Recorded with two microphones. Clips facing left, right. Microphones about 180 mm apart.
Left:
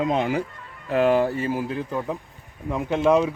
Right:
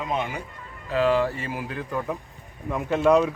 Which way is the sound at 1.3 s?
40° left (ahead or behind).